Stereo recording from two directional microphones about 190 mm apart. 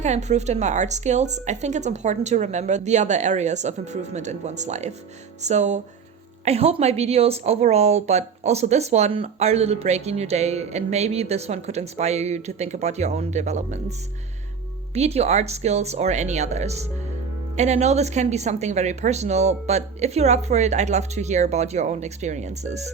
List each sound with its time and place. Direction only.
0.0 s speech: 35° right (ahead or behind)
14.9 s speech: 35° right (ahead or behind)